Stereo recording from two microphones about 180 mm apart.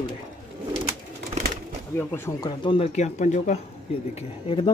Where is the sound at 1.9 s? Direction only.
15° left (ahead or behind).